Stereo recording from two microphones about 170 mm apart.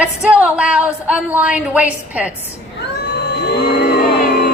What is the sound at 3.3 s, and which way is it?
Cattle, 75° left (ahead or behind).